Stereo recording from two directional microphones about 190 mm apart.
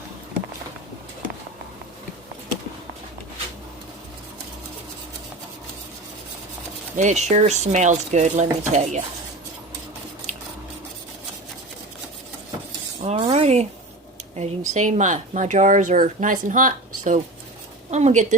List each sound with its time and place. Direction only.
6.9 s speech: 40° right (ahead or behind)
10.3 s dishes: 40° right (ahead or behind)
13.0 s stir: 30° right (ahead or behind)
14.3 s speech: 35° right (ahead or behind)